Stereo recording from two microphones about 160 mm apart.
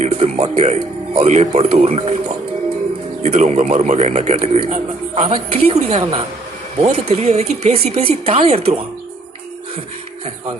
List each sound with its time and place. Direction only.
0.0 s a man's voice: 40° right (ahead or behind)